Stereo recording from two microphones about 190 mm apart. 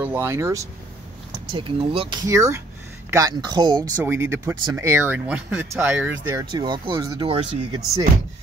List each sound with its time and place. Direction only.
0.0 s speech: 10° right (ahead or behind)
1.5 s speech: 25° right (ahead or behind)
2.2 s speech: 15° right (ahead or behind)
4.0 s speech: 10° right (ahead or behind)
6.5 s speech: 25° right (ahead or behind)